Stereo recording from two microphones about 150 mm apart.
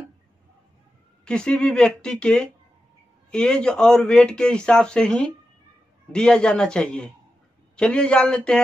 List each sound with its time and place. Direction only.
1.2 s a man's voice: 5° left (ahead or behind)